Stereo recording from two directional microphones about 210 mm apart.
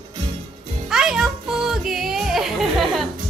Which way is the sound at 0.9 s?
Centre (ahead or behind).